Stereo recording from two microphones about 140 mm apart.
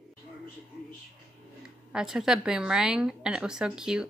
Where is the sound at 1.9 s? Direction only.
5° right (ahead or behind).